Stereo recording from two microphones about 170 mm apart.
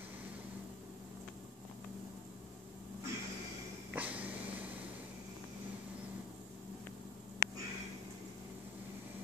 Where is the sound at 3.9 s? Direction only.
10° right (ahead or behind).